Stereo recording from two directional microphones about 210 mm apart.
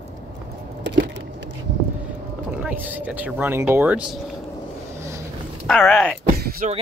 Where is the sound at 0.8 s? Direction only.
60° right (ahead or behind).